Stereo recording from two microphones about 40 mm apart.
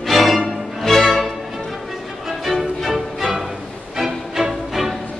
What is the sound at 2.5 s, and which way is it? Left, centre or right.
Music, centre.